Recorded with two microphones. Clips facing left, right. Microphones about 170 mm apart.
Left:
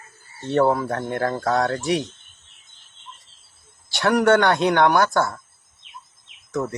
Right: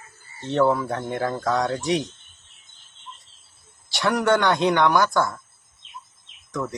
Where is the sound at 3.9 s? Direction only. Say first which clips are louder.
Left 3 dB; 60° left (ahead or behind).